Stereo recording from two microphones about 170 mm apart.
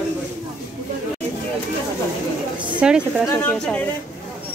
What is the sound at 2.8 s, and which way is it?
Speech, 5° right (ahead or behind).